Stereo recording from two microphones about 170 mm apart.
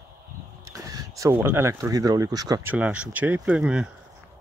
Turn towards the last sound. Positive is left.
turn(degrees=-5)  # may be behind; listen again after turning